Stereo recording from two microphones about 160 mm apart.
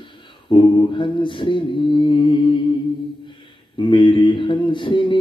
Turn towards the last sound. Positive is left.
turn(degrees=30)  # may be behind; listen again after turning